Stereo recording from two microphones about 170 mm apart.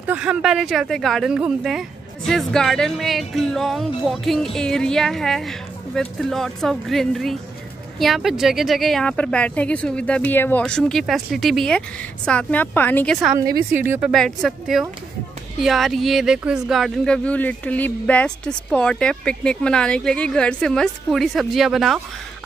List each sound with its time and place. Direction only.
0.0 s a woman's voice: 10° right (ahead or behind)
13.7 s speech: 15° right (ahead or behind)
14.1 s speech: centre (ahead or behind)